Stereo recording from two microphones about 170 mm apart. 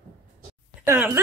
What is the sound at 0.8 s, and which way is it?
Speech, 10° right (ahead or behind).